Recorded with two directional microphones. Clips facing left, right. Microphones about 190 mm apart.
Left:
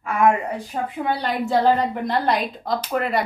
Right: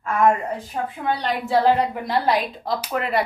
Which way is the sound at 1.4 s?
10° right (ahead or behind).